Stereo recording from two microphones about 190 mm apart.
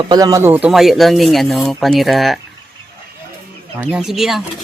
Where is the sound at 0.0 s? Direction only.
20° right (ahead or behind); by 2.4 s centre (ahead or behind).